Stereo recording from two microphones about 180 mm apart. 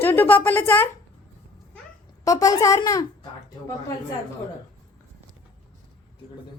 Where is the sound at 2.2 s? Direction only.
20° left (ahead or behind).